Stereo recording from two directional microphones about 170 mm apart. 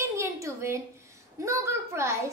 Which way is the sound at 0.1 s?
15° right (ahead or behind).